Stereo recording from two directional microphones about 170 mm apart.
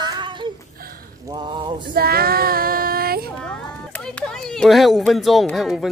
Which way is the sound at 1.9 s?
65° right (ahead or behind).